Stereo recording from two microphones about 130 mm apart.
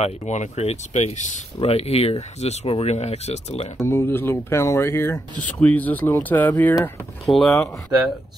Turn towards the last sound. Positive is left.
turn(degrees=5)  # may be behind; listen again after turning